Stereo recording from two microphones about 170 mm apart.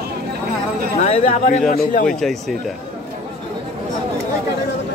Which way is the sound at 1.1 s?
35° left (ahead or behind).